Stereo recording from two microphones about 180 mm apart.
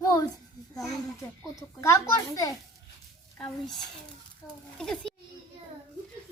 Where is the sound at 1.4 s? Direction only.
20° left (ahead or behind).